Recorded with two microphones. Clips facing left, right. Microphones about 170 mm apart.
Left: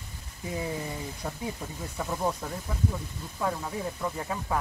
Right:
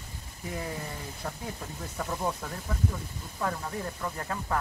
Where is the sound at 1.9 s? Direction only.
5° left (ahead or behind).